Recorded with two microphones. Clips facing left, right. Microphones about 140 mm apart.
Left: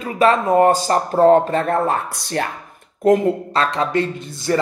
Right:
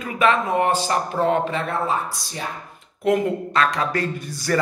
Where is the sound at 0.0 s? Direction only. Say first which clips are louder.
Left 4 dB; 40° left (ahead or behind); by 2.5 s 65° left (ahead or behind).